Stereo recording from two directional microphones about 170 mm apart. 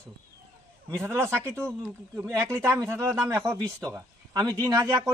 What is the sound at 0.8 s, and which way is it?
Speech, 15° right (ahead or behind).